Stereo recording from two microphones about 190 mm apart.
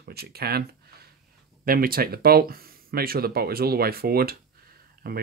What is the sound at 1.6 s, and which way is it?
Speech, 50° right (ahead or behind).